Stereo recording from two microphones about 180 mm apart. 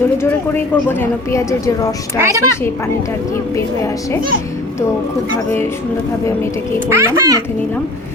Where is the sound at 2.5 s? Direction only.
15° left (ahead or behind).